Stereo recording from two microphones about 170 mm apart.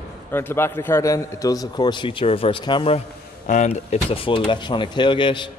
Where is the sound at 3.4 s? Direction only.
45° left (ahead or behind).